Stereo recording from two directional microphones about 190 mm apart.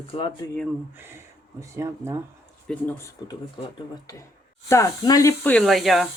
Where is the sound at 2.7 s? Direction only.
10° left (ahead or behind).